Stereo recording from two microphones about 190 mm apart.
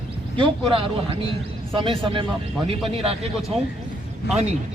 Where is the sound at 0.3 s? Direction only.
25° right (ahead or behind).